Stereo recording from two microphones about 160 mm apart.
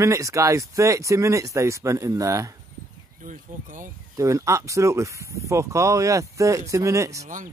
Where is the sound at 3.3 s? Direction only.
55° right (ahead or behind).